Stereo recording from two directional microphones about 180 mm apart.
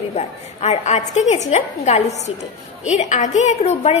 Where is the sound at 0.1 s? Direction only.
40° left (ahead or behind).